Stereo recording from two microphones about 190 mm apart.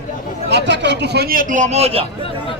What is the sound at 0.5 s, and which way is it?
A man's voice, 70° right (ahead or behind).